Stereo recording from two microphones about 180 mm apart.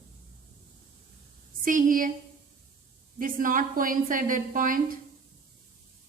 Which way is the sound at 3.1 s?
50° right (ahead or behind).